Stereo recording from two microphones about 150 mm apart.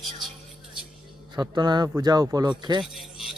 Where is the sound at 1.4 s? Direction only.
30° right (ahead or behind).